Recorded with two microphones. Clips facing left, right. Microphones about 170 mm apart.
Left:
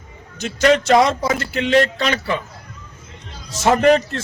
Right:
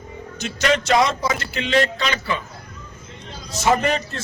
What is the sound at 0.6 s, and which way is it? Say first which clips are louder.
Speech: left 5 dB; 35° left (ahead or behind).